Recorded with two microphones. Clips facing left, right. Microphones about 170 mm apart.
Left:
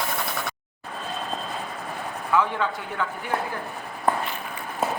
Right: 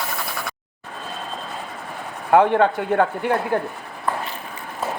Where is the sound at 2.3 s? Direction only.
60° right (ahead or behind).